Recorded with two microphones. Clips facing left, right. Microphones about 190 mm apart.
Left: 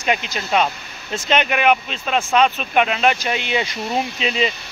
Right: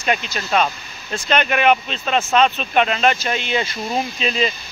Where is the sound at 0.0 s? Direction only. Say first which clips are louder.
Even; 15° left (ahead or behind).